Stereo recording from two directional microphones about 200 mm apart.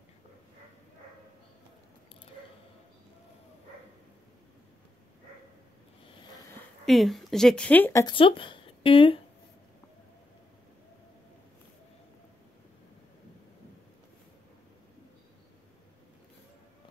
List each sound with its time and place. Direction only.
6.9 s a woman's voice: centre (ahead or behind)
8.1 s speech: 25° left (ahead or behind)